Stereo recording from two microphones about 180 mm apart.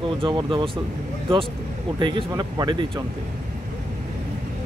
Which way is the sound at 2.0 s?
25° right (ahead or behind).